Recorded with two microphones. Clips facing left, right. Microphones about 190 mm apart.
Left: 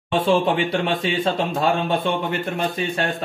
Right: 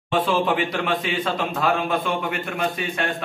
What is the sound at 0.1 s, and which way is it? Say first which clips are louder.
Speech: left 2 dB; 30° left (ahead or behind).